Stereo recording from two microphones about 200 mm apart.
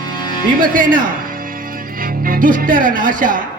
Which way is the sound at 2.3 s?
45° right (ahead or behind).